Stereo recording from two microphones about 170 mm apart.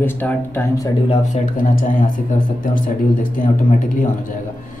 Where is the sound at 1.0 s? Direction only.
40° left (ahead or behind).